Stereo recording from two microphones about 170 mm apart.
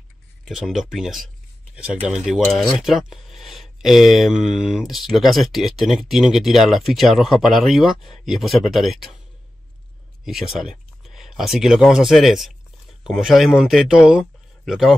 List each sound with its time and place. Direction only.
0.5 s speech: centre (ahead or behind)
10.2 s speech: centre (ahead or behind)